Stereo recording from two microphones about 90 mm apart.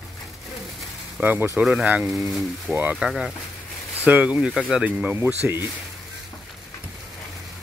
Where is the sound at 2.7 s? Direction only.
15° right (ahead or behind).